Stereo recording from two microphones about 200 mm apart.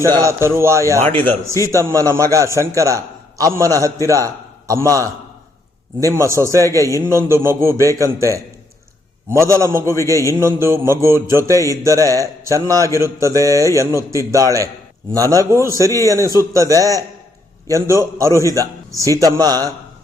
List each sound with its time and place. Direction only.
0.0 s a man's voice: 15° right (ahead or behind)
6.1 s a man's voice: 15° right (ahead or behind)